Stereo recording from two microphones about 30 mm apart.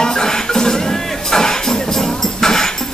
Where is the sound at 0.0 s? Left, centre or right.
Left.